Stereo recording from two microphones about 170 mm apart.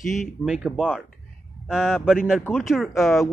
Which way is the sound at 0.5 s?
5° right (ahead or behind).